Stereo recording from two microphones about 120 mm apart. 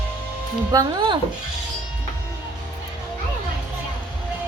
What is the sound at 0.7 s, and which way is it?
Speech, 30° right (ahead or behind).